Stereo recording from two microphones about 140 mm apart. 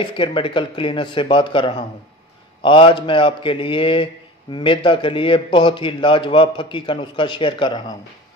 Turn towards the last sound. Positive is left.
turn(degrees=30)  # may be behind; listen again after turning